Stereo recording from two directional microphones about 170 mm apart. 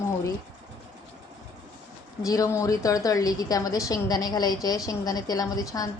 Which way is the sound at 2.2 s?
20° left (ahead or behind).